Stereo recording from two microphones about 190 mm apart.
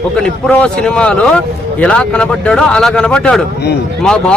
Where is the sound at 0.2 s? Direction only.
5° left (ahead or behind).